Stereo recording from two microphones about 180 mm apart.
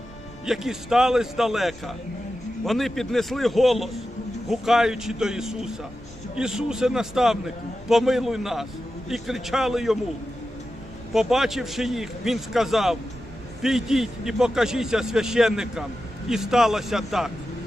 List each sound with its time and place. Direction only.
0.4 s a man's voice: centre (ahead or behind)
11.1 s a man's voice: centre (ahead or behind)